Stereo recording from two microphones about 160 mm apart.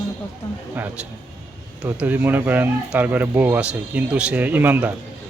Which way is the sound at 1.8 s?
10° right (ahead or behind).